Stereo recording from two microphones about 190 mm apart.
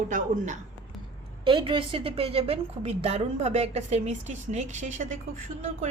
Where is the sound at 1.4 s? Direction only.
25° right (ahead or behind).